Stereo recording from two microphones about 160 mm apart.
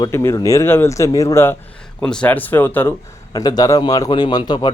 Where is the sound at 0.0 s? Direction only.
20° left (ahead or behind).